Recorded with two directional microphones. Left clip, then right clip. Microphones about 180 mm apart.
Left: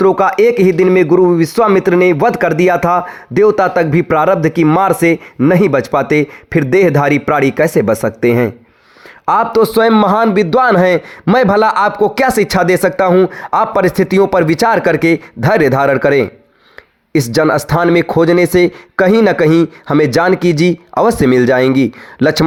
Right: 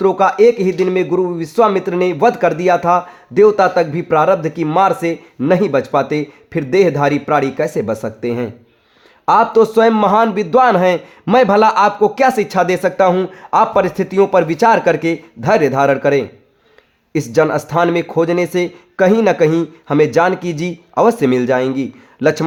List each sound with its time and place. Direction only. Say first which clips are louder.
0.0 s a man's voice: left 1 dB; 45° left (ahead or behind)